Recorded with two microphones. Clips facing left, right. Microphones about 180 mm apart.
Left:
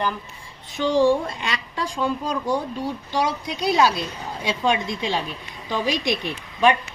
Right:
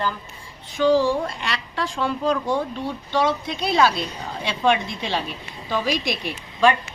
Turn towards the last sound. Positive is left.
turn(degrees=20)  # may be behind; listen again after turning